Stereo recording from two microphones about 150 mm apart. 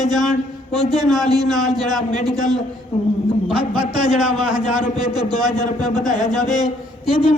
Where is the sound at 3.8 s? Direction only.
30° right (ahead or behind).